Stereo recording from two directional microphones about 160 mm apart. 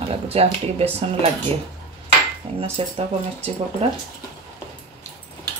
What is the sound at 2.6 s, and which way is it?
Speech, 35° right (ahead or behind).